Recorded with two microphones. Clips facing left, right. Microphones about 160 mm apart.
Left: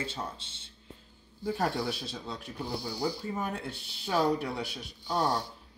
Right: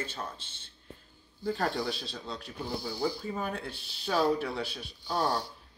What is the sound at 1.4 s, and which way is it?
Speech, 20° left (ahead or behind).